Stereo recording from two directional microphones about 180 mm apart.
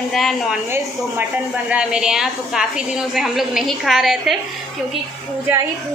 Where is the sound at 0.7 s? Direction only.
10° right (ahead or behind).